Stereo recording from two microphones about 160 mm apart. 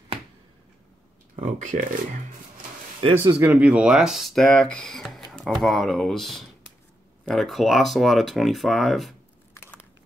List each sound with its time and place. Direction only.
1.3 s speech: 50° right (ahead or behind)
3.0 s speech: 30° right (ahead or behind)
3.3 s speech: 10° right (ahead or behind)